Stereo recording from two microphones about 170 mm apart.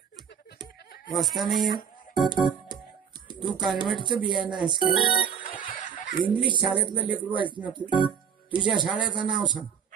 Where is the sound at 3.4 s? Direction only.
Centre (ahead or behind).